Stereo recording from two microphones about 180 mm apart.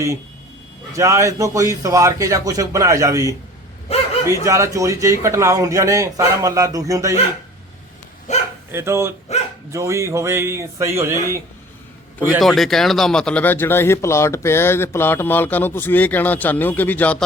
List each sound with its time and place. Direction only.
0.9 s speech: 15° right (ahead or behind)
8.3 s bow-wow: 40° left (ahead or behind)
8.7 s speech: 15° right (ahead or behind)
12.4 s speech: centre (ahead or behind)